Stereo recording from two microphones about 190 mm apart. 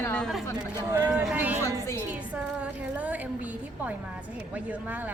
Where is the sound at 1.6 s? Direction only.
15° left (ahead or behind).